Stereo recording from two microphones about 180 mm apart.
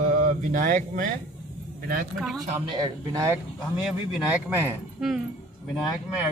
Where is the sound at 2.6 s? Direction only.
20° right (ahead or behind); by 5.2 s 5° right (ahead or behind).